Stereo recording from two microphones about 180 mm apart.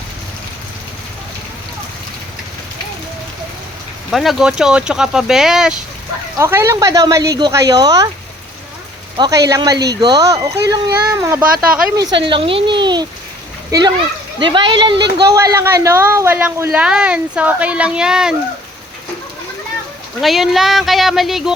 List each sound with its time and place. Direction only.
4.1 s speech: centre (ahead or behind)
6.4 s speech: 15° right (ahead or behind)
9.1 s speech: 20° right (ahead or behind)
12.1 s speech: 30° right (ahead or behind); by 18.3 s 5° right (ahead or behind)
20.2 s speech: centre (ahead or behind)